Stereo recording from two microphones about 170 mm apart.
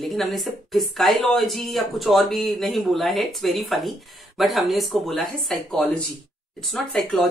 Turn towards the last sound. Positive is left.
turn(degrees=0)  # may be behind; listen again after turning